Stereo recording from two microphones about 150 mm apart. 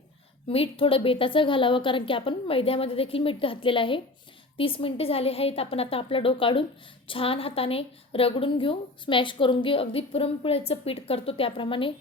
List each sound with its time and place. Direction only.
0.4 s a woman's voice: 40° left (ahead or behind)